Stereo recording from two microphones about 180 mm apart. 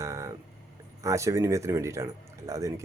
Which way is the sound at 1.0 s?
15° right (ahead or behind).